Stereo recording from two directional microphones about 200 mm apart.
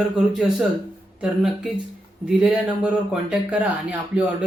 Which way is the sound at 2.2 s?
5° right (ahead or behind).